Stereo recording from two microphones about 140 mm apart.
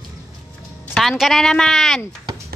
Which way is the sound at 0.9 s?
Centre (ahead or behind).